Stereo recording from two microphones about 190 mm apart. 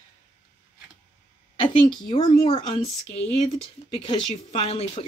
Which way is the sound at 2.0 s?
25° left (ahead or behind).